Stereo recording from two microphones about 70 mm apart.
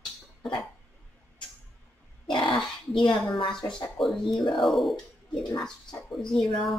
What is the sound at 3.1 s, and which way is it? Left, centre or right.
Speech, left.